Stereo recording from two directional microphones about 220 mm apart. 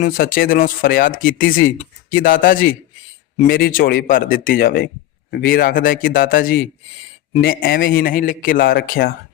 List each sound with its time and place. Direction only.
0.0 s a man's voice: 40° left (ahead or behind)